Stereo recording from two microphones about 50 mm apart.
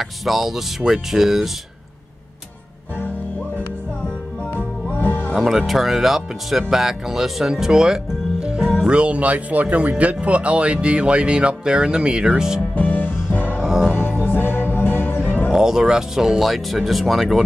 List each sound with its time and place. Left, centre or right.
0.0 s speech: centre
4.9 s music: left
5.3 s speech: centre
12.7 s music: left
13.6 s music: centre
13.9 s music: left
15.5 s speech: centre
16.3 s speech: centre